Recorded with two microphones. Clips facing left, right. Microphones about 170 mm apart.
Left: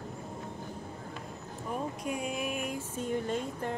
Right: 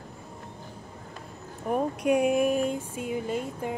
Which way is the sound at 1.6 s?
65° right (ahead or behind).